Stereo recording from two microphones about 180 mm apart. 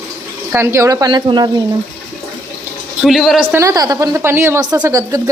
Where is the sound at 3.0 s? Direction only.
Centre (ahead or behind).